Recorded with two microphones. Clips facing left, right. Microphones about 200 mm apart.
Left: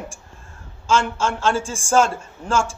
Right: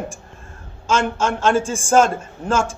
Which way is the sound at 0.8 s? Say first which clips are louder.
Right 1 dB; 55° right (ahead or behind).